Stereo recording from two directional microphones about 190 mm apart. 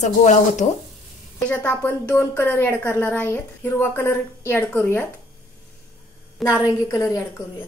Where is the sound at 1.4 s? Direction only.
10° left (ahead or behind).